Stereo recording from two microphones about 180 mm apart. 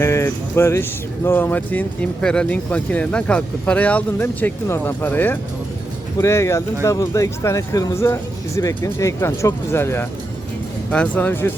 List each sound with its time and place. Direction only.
0.0 s speech: 15° left (ahead or behind)